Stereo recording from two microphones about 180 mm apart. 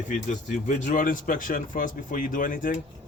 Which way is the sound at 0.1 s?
45° left (ahead or behind).